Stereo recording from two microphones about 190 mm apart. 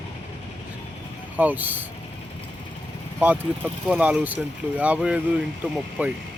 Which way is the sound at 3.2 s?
10° right (ahead or behind).